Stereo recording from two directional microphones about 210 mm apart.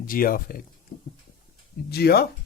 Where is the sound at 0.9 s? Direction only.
30° left (ahead or behind).